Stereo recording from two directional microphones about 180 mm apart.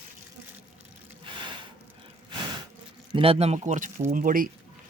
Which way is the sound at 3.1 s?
30° right (ahead or behind).